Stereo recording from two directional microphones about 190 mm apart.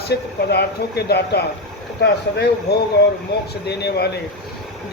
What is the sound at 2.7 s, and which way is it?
Speech, 60° left (ahead or behind).